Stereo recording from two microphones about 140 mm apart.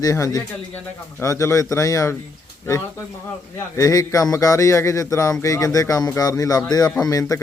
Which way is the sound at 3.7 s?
25° left (ahead or behind).